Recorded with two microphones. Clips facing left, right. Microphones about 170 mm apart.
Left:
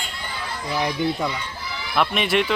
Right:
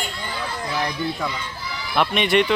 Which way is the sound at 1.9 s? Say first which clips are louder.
Right 2 dB; centre (ahead or behind).